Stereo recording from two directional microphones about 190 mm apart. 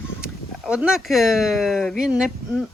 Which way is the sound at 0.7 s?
5° right (ahead or behind).